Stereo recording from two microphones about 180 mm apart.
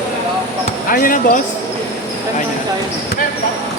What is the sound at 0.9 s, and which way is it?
Speech, 50° left (ahead or behind).